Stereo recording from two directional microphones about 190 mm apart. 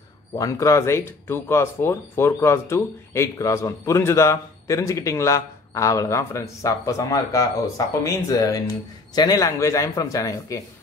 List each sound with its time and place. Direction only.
0.4 s speech: 15° left (ahead or behind)